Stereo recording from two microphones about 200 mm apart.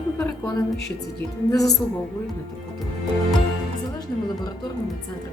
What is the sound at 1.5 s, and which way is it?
Speech, 20° left (ahead or behind).